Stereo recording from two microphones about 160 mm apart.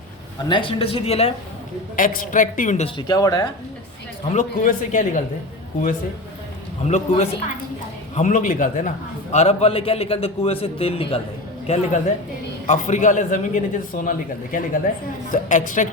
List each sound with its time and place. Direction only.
0.4 s a man's voice: 30° left (ahead or behind)
2.0 s a woman's voice: 55° left (ahead or behind)
3.1 s speech: 20° left (ahead or behind)
4.3 s a man's voice: 50° left (ahead or behind)
6.8 s a man's voice: 45° left (ahead or behind)
9.3 s a man's voice: 40° left (ahead or behind)
12.6 s a man's voice: 50° left (ahead or behind)